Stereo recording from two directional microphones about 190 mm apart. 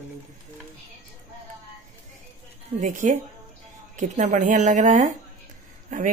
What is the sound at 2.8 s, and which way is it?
Speech, 40° right (ahead or behind).